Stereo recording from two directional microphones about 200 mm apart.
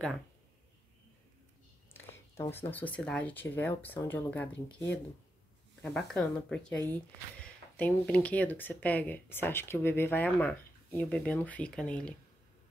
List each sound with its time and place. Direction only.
2.0 s speech: 10° left (ahead or behind)